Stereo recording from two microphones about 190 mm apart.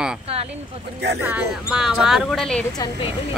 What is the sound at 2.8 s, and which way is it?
Speech, 25° left (ahead or behind).